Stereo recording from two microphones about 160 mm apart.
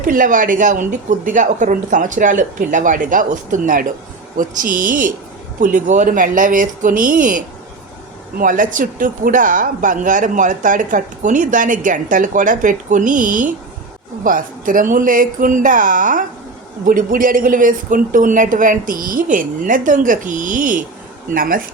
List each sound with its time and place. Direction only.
0.0 s speech: 55° right (ahead or behind)